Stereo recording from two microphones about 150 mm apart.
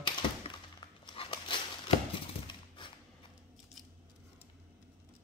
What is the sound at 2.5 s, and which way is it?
Horse, 30° left (ahead or behind).